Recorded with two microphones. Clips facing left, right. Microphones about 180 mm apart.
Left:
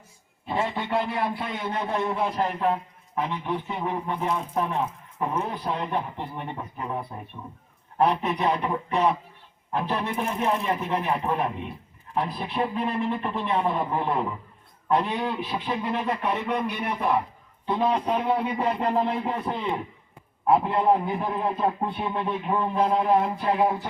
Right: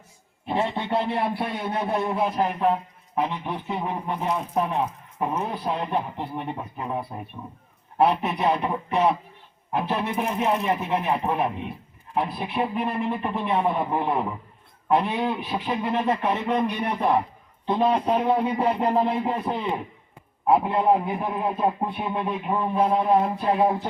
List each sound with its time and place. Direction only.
0.4 s a man's voice: 25° right (ahead or behind)
2.0 s a man's voice: 15° right (ahead or behind)
8.4 s a man's voice: 20° right (ahead or behind)